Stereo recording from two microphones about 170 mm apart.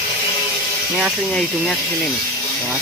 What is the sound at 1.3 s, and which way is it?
Speech, 5° left (ahead or behind).